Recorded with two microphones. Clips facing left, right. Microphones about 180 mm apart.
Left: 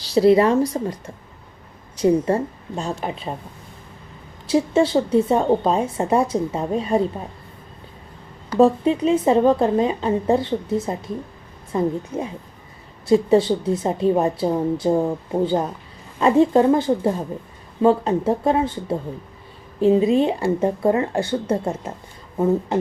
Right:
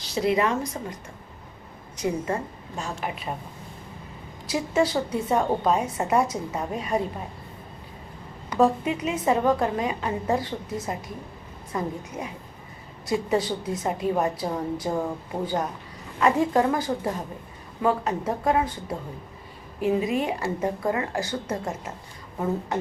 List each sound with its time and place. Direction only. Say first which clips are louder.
0.0 s a woman's voice: left 9 dB; 35° left (ahead or behind)
2.0 s a woman's voice: left 9 dB; 35° left (ahead or behind)
4.4 s a woman's voice: left 6 dB; 30° left (ahead or behind)
8.4 s a woman's voice: left 6 dB; 30° left (ahead or behind)